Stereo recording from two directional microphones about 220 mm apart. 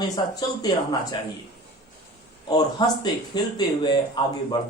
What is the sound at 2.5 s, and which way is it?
Speech, 20° left (ahead or behind).